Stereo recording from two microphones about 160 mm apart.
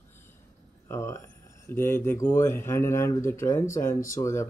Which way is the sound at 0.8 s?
15° left (ahead or behind).